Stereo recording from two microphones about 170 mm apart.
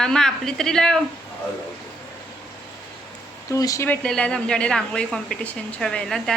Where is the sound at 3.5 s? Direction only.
20° left (ahead or behind).